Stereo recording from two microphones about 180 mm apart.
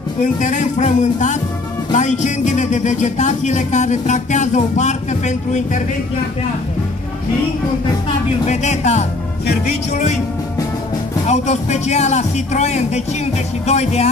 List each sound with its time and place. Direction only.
0.2 s speech: 45° left (ahead or behind)
8.5 s speech: 40° left (ahead or behind)
11.2 s speech: 40° left (ahead or behind)